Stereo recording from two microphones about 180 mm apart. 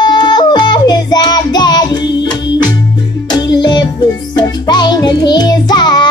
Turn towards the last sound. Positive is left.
turn(degrees=25)  # may be behind; listen again after turning